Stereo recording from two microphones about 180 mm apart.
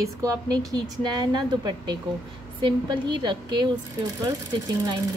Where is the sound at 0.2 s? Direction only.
20° right (ahead or behind).